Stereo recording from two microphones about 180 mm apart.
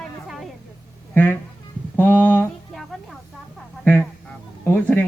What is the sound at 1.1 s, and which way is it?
Speech, 10° left (ahead or behind).